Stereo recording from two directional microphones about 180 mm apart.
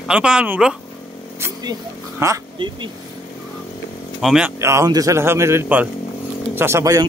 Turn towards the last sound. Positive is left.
turn(degrees=-15)  # may be behind; listen again after turning